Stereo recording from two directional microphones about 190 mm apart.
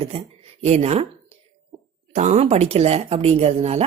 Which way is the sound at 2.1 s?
40° right (ahead or behind).